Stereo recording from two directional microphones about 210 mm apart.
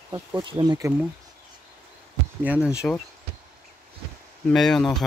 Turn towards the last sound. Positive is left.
turn(degrees=0)  # may be behind; listen again after turning